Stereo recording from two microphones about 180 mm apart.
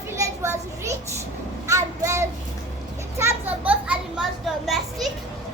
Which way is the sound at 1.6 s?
15° right (ahead or behind).